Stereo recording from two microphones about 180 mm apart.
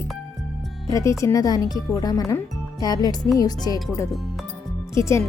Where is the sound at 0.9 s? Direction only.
15° left (ahead or behind).